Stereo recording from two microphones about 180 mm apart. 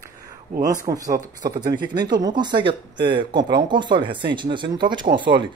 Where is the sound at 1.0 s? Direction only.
45° right (ahead or behind).